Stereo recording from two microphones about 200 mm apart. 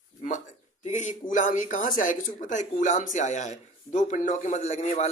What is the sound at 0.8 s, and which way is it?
Speech, 40° left (ahead or behind).